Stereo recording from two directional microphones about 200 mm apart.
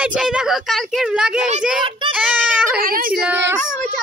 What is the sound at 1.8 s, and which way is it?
Child singing, 25° right (ahead or behind).